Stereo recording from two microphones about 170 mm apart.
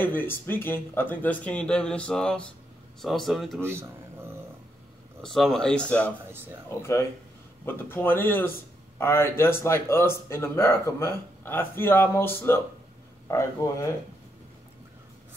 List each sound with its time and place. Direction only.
0.0 s a man's voice: 10° left (ahead or behind)
3.6 s a sound: 15° right (ahead or behind)
5.2 s a man's voice: centre (ahead or behind)
6.3 s speech: 15° right (ahead or behind)
6.7 s a man's voice: 15° left (ahead or behind)